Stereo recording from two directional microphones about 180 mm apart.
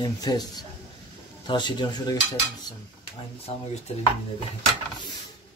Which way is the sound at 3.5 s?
35° left (ahead or behind).